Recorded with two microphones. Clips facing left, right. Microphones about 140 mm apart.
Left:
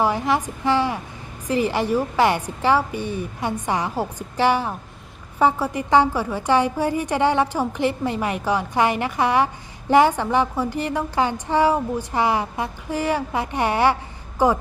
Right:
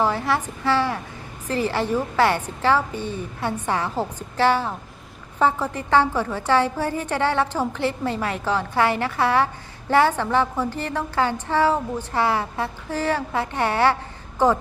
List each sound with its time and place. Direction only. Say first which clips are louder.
0.0 s a woman's voice: left 1 dB; 15° left (ahead or behind)